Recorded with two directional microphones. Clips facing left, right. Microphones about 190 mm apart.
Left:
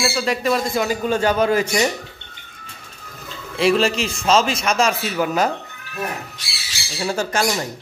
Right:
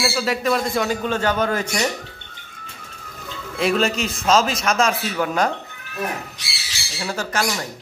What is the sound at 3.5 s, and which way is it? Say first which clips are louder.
A man's voice: left 3 dB; centre (ahead or behind).